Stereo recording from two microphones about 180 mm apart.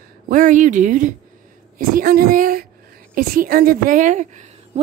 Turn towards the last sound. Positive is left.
turn(degrees=-40)  # may be behind; listen again after turning